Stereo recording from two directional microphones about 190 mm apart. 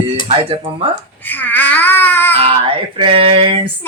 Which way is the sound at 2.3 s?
30° right (ahead or behind).